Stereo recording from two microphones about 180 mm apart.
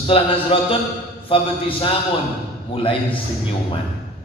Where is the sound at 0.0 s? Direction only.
30° left (ahead or behind).